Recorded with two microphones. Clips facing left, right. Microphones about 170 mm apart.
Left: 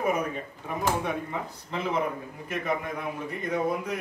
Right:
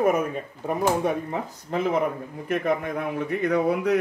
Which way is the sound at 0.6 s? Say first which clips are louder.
Right 6 dB; 45° right (ahead or behind).